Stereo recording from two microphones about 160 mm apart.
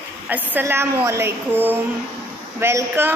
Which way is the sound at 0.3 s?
10° right (ahead or behind).